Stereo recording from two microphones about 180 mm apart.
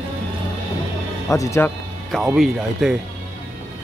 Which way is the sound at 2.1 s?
5° left (ahead or behind).